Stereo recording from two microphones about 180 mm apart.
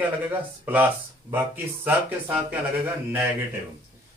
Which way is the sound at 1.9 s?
10° right (ahead or behind).